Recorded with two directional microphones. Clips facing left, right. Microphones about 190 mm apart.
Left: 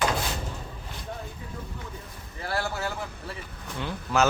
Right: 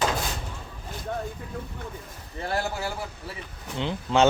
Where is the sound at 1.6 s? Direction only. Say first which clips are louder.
Right 4 dB; 60° right (ahead or behind).